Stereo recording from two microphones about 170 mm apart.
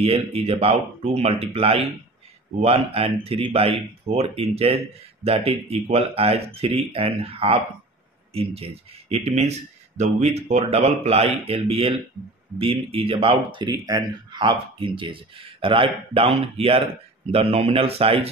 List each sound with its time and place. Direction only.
0.0 s speech: 35° right (ahead or behind)